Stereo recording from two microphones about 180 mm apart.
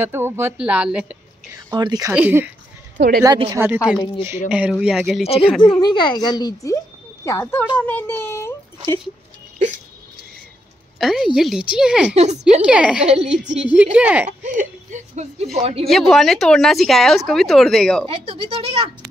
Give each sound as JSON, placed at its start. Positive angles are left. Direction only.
{"t": 0.0, "sound": "speech", "side_deg": -15}
{"t": 1.7, "sound": "speech", "side_deg": -20}
{"t": 2.1, "sound": "speech", "side_deg": -10}
{"t": 3.5, "sound": "speech", "side_deg": -10}
{"t": 5.2, "sound": "speech", "side_deg": 35}
{"t": 5.6, "sound": "a woman's voice", "side_deg": 25}
{"t": 11.0, "sound": "a woman's voice", "side_deg": 0}
{"t": 12.2, "sound": "speech", "side_deg": -40}
{"t": 12.6, "sound": "speech", "side_deg": -5}
{"t": 14.4, "sound": "speech", "side_deg": -45}
{"t": 15.9, "sound": "speech", "side_deg": 0}
{"t": 18.0, "sound": "speech", "side_deg": -30}